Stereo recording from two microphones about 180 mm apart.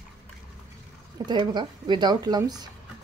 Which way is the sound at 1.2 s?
25° right (ahead or behind).